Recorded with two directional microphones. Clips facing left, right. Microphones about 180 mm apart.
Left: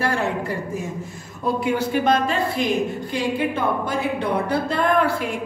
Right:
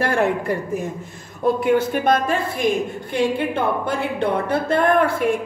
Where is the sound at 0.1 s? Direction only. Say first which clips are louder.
Right 4 dB; 55° right (ahead or behind).